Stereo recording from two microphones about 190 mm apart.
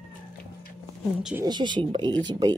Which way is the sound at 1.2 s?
5° right (ahead or behind).